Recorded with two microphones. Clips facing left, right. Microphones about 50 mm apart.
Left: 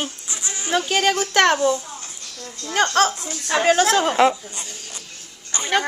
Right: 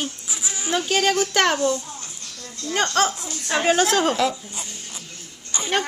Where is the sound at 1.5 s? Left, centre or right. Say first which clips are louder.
Left 2 dB; left.